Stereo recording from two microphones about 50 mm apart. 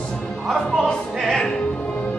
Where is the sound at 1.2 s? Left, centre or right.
Centre.